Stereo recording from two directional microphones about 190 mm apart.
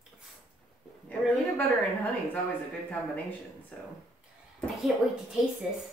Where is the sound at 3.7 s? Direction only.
5° left (ahead or behind).